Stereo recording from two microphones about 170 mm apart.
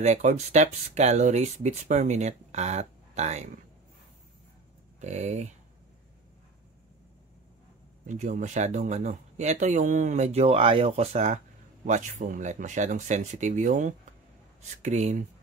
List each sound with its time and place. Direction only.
0.0 s speech: 45° right (ahead or behind)
5.0 s speech: 40° right (ahead or behind)
8.1 s speech: 45° right (ahead or behind)